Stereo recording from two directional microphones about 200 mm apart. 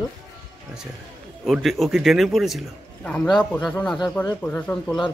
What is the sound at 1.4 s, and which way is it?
A man's voice, centre (ahead or behind).